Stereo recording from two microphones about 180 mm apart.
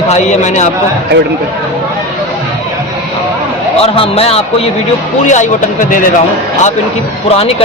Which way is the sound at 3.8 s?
35° left (ahead or behind).